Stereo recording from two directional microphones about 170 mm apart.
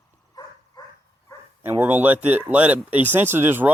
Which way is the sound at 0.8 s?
20° left (ahead or behind).